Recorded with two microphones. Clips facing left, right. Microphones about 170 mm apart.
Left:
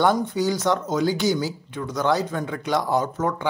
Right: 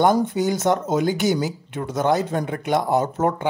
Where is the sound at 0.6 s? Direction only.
25° right (ahead or behind).